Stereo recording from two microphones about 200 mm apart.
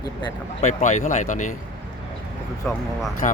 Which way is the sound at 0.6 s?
40° left (ahead or behind).